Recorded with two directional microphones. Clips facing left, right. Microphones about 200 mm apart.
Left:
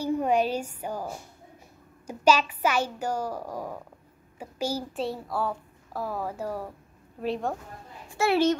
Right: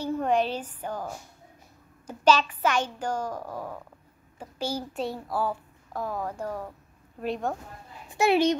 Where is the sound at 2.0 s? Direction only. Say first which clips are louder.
Even; 10° left (ahead or behind).